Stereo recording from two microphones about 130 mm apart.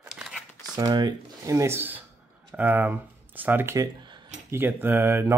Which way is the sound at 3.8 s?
35° right (ahead or behind).